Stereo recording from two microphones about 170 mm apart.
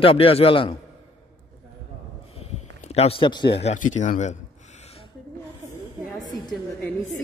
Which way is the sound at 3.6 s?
45° left (ahead or behind).